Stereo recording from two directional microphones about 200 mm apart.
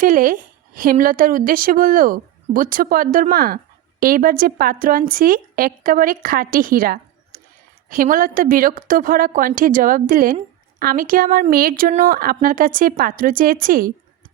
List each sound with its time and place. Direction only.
0.0 s a woman's voice: 40° right (ahead or behind)